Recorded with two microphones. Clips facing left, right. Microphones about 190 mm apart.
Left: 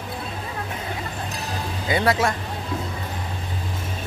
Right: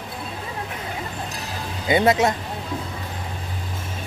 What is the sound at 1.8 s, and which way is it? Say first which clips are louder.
Speech: right 3 dB; 20° right (ahead or behind).